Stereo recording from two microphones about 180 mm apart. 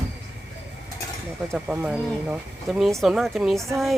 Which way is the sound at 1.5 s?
10° right (ahead or behind).